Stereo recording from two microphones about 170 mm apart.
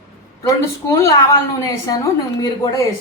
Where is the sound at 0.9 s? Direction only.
15° left (ahead or behind).